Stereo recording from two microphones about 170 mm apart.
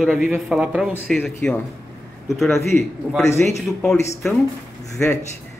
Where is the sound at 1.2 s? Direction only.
10° left (ahead or behind).